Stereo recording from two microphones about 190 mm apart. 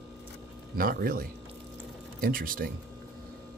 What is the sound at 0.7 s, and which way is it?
Speech, 50° right (ahead or behind).